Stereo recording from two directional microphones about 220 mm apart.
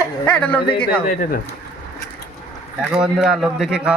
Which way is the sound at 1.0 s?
35° left (ahead or behind).